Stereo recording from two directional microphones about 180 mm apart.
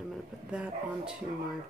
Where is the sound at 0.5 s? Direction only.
5° right (ahead or behind).